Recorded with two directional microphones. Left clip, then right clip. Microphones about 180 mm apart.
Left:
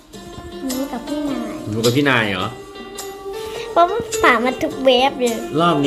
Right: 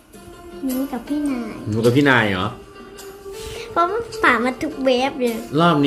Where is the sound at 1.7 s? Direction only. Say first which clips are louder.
Right 1 dB; 20° right (ahead or behind).